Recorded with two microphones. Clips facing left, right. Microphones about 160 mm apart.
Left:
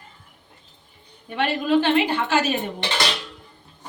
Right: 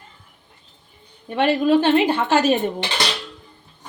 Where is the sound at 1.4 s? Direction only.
45° right (ahead or behind).